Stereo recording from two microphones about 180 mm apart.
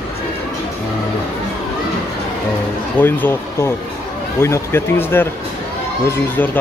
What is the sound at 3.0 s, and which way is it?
Speech, 10° left (ahead or behind).